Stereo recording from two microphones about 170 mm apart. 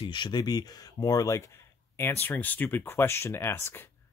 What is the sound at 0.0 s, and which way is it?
Speech, 25° left (ahead or behind).